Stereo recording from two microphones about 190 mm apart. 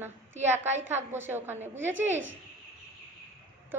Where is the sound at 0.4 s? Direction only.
35° right (ahead or behind).